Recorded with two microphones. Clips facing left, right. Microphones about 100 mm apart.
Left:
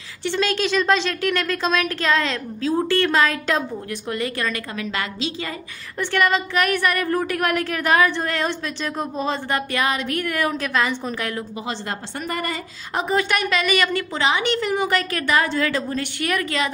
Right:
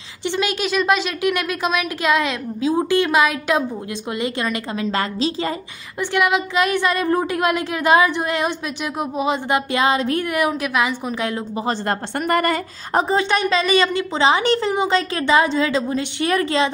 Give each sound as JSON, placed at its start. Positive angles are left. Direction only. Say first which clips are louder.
{"t": 0.2, "sound": "a woman's voice", "louder": "even", "side_deg": -15}
{"t": 4.9, "sound": "a woman's voice", "louder": "right 6 dB", "side_deg": -35}
{"t": 5.9, "sound": "a woman's voice", "louder": "right 1 dB", "side_deg": -15}
{"t": 11.2, "sound": "a woman's voice", "louder": "right 4 dB", "side_deg": -20}
{"t": 11.6, "sound": "a woman's voice", "louder": "right 6 dB", "side_deg": -55}
{"t": 12.9, "sound": "a woman's voice", "louder": "right 3 dB", "side_deg": -25}
{"t": 14.7, "sound": "a woman's voice", "louder": "right 2 dB", "side_deg": -20}
{"t": 16.3, "sound": "a woman's voice", "louder": "right 5 dB", "side_deg": -30}